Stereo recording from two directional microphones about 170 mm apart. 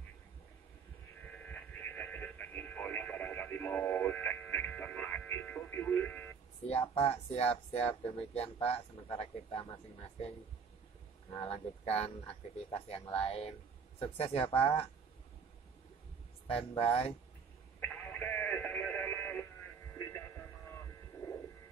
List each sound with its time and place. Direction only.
1.5 s radio: 10° left (ahead or behind)
6.7 s speech: 35° left (ahead or behind)
11.5 s speech: 35° left (ahead or behind)
16.4 s speech: 35° left (ahead or behind)
17.7 s a sound: 10° left (ahead or behind)
19.9 s hum: 15° left (ahead or behind)